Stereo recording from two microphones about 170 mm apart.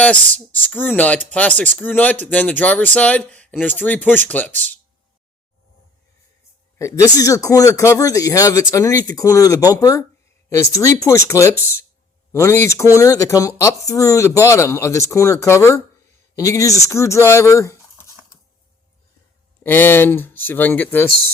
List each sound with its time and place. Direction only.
0.0 s speech: 10° left (ahead or behind)
6.7 s a man's voice: 20° left (ahead or behind)
19.6 s speech: 10° left (ahead or behind)